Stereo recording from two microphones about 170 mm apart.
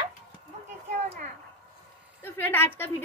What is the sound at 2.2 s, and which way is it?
Speech, 15° left (ahead or behind).